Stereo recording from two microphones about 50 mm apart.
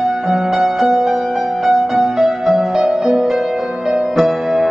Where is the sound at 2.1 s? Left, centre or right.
Centre.